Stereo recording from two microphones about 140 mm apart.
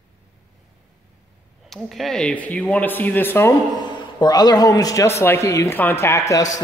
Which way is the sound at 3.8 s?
30° left (ahead or behind).